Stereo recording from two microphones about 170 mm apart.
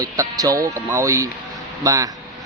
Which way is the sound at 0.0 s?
20° right (ahead or behind).